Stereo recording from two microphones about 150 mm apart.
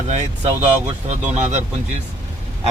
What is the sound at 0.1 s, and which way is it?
Speech, 50° right (ahead or behind).